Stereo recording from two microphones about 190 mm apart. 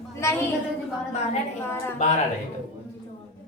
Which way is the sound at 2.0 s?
40° left (ahead or behind).